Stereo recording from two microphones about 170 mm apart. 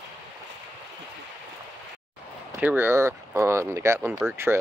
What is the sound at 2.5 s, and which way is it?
Speech, 10° right (ahead or behind).